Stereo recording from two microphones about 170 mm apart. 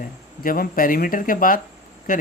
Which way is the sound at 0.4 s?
55° left (ahead or behind).